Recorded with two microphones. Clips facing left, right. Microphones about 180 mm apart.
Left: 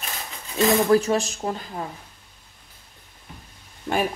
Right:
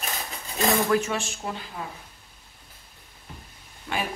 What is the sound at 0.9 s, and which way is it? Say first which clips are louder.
Speech: left 6 dB; 35° left (ahead or behind).